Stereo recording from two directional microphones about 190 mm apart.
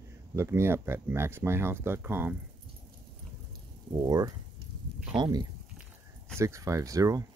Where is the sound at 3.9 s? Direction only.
20° right (ahead or behind).